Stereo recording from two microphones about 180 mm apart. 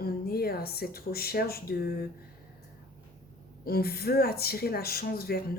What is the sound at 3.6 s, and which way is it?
Speech, 60° left (ahead or behind).